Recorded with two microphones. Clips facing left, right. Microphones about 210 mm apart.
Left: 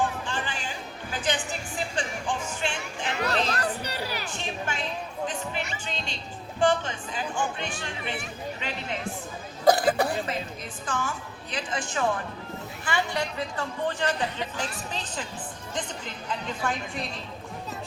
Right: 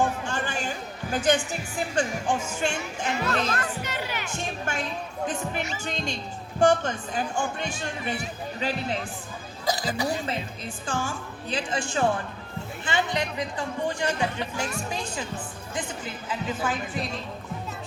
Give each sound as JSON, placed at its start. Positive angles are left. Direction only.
{"t": 0.0, "sound": "music", "side_deg": -45}
{"t": 2.0, "sound": "speech", "side_deg": -45}
{"t": 3.5, "sound": "crowd", "side_deg": 35}
{"t": 4.4, "sound": "speech", "side_deg": -45}
{"t": 5.8, "sound": "speech", "side_deg": -45}
{"t": 9.6, "sound": "a woman's voice", "side_deg": 60}
{"t": 10.8, "sound": "speech", "side_deg": -30}